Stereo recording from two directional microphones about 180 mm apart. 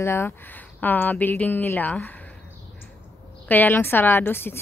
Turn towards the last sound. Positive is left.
turn(degrees=10)  # may be behind; listen again after turning